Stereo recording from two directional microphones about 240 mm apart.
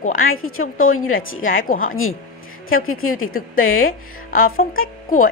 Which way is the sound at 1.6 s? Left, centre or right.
Left.